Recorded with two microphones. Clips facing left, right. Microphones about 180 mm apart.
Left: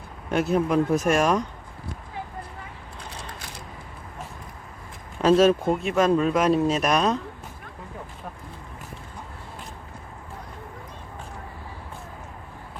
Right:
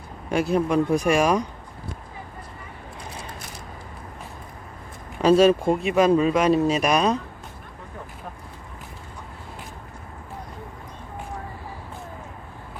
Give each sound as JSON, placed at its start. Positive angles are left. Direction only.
{"t": 0.3, "sound": "speech", "side_deg": 0}
{"t": 5.2, "sound": "speech", "side_deg": 0}